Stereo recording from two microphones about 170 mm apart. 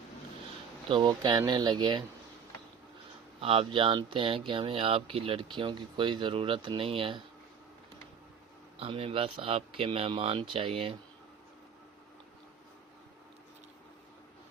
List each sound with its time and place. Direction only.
0.9 s speech: 25° right (ahead or behind)
3.4 s speech: 35° right (ahead or behind)
8.8 s speech: 35° right (ahead or behind)